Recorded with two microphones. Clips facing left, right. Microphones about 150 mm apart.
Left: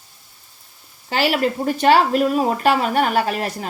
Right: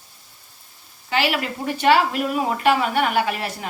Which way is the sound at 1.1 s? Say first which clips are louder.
Left 4 dB; 40° left (ahead or behind).